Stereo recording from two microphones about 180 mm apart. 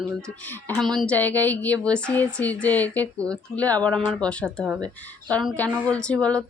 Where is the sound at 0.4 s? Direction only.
10° left (ahead or behind).